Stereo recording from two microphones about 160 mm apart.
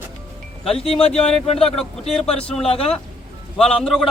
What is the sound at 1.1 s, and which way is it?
A man's voice, 5° left (ahead or behind).